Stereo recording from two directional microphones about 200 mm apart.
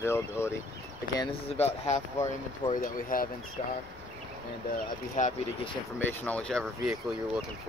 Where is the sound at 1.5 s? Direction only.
30° left (ahead or behind).